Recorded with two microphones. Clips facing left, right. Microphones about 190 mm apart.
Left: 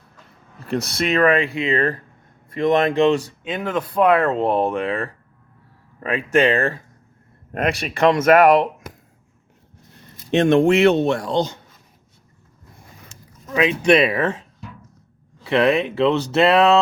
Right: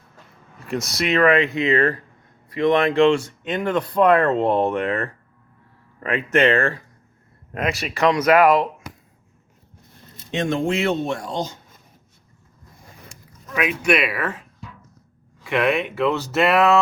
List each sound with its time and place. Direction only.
0.6 s speech: 35° left (ahead or behind)
2.5 s speech: 45° left (ahead or behind)
2.9 s speech: 20° left (ahead or behind)
3.4 s speech: 5° left (ahead or behind)
7.5 s speech: 60° left (ahead or behind)
10.3 s speech: 65° left (ahead or behind)
13.5 s speech: 25° left (ahead or behind)
15.4 s speech: 30° left (ahead or behind)